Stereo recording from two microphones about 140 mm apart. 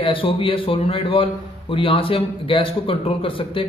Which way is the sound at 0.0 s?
40° left (ahead or behind).